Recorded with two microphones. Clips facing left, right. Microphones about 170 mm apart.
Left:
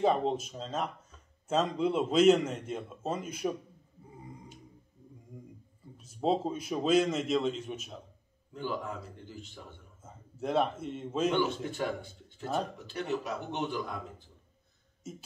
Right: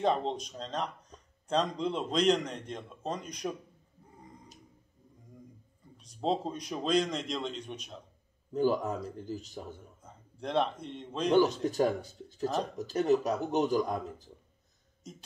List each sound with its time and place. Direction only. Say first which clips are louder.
0.0 s a man's voice: left 2 dB; 5° left (ahead or behind)
5.9 s a man's voice: left 2 dB; 5° left (ahead or behind)
8.5 s speech: right 8 dB; 40° right (ahead or behind)
10.0 s a man's voice: left 4 dB; 5° left (ahead or behind)
11.2 s speech: right 6 dB; 40° right (ahead or behind)
15.0 s beatboxing: left 4 dB; 5° left (ahead or behind)